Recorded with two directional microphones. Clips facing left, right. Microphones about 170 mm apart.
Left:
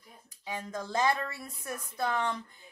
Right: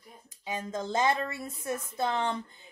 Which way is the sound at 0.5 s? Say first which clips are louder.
Right 3 dB; 25° right (ahead or behind).